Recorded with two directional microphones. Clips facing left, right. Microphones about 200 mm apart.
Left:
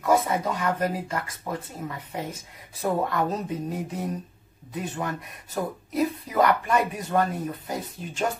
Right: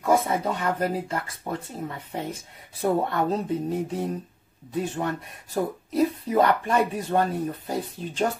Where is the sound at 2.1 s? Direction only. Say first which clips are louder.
Right 1 dB; 30° right (ahead or behind).